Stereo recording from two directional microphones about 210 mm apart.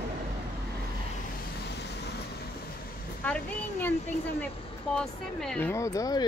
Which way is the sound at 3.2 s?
5° left (ahead or behind).